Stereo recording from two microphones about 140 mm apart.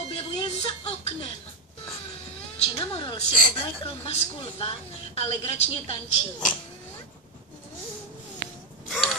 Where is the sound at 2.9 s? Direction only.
35° left (ahead or behind).